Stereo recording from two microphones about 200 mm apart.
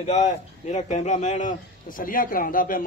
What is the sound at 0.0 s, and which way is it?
Speech, 35° left (ahead or behind).